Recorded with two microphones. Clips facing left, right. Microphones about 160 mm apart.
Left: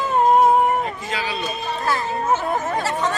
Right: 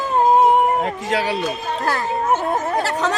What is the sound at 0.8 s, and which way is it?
Speech, 70° right (ahead or behind).